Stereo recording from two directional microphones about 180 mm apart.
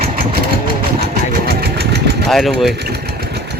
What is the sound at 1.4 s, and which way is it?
Engine, 60° right (ahead or behind).